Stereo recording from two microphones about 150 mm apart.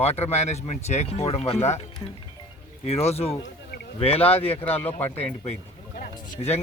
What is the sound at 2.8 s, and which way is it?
Speech, 45° left (ahead or behind).